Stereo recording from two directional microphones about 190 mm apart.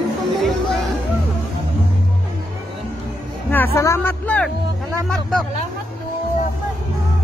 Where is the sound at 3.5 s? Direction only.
10° left (ahead or behind).